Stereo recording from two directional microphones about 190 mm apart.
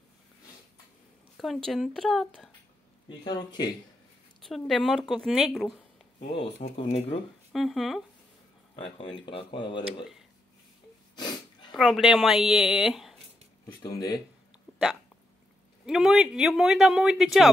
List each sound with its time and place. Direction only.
1.3 s a sound: centre (ahead or behind)
1.7 s speech: centre (ahead or behind)
3.3 s speech: 20° left (ahead or behind)
4.4 s speech: centre (ahead or behind)
6.2 s speech: 35° left (ahead or behind)
7.5 s speech: centre (ahead or behind)
8.9 s speech: 25° left (ahead or behind)
11.1 s sneeze: 25° left (ahead or behind)
11.7 s speech: centre (ahead or behind)
13.8 s speech: 20° left (ahead or behind)
15.8 s speech: centre (ahead or behind)